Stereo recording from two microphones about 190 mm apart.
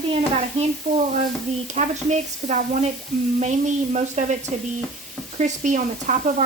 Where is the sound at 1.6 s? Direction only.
40° right (ahead or behind).